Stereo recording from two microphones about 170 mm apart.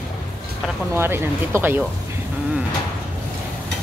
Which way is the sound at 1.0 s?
15° right (ahead or behind).